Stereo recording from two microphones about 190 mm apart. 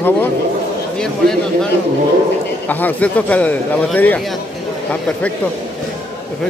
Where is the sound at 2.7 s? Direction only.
10° left (ahead or behind).